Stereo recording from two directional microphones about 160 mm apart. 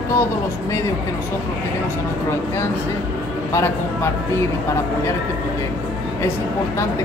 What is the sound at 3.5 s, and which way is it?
Speech, 15° left (ahead or behind).